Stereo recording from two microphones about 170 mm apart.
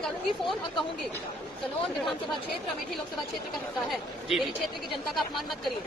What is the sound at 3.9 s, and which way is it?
Speech, centre (ahead or behind).